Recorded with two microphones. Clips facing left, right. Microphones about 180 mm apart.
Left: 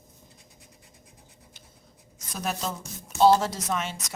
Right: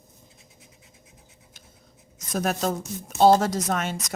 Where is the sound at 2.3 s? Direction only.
50° right (ahead or behind).